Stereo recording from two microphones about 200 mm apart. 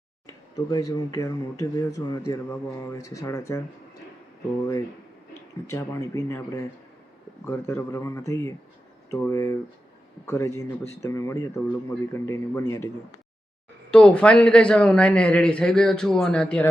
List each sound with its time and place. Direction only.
0.3 s speech: 15° left (ahead or behind)
5.6 s speech: 15° left (ahead or behind)
13.9 s a man's voice: 5° left (ahead or behind)